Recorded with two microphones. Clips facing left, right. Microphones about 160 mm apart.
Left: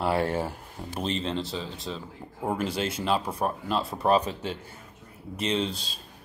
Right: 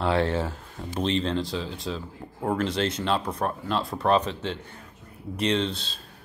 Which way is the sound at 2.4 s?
10° left (ahead or behind).